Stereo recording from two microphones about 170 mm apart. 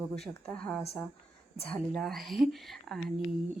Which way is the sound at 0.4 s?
5° left (ahead or behind).